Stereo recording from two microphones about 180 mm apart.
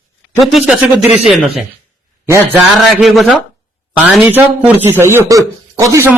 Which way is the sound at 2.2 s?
15° right (ahead or behind).